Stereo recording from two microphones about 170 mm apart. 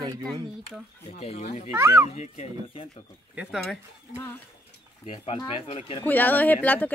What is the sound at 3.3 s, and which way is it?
Speech, 5° right (ahead or behind).